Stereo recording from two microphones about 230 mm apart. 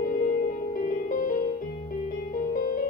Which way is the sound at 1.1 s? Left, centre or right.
Left.